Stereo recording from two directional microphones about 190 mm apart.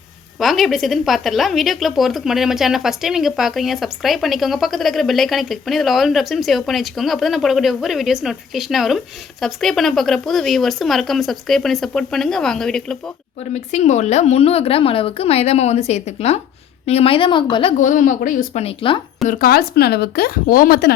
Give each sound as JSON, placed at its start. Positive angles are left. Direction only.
{"t": 0.3, "sound": "speech", "side_deg": 0}
{"t": 13.5, "sound": "a woman's voice", "side_deg": 35}
{"t": 17.7, "sound": "speech", "side_deg": 45}
{"t": 18.6, "sound": "a woman's voice", "side_deg": 25}
{"t": 19.3, "sound": "speech", "side_deg": 55}